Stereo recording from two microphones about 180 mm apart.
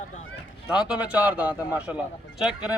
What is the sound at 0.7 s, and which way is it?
Speech, 10° right (ahead or behind).